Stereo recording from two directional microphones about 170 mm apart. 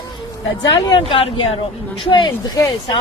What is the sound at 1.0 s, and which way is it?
Speech, 30° left (ahead or behind).